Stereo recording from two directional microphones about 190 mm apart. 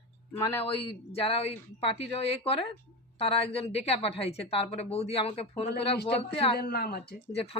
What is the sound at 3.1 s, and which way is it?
A woman's voice, 30° left (ahead or behind).